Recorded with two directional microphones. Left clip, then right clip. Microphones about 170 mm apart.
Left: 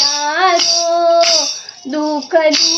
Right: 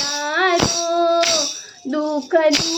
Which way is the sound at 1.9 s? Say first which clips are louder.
Left 4 dB; 15° right (ahead or behind).